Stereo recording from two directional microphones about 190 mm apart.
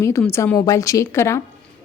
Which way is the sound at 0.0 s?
15° left (ahead or behind).